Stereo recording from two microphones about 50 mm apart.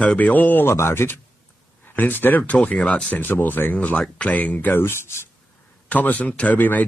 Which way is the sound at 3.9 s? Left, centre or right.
Left.